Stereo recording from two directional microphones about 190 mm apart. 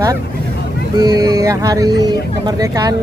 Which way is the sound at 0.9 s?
20° right (ahead or behind).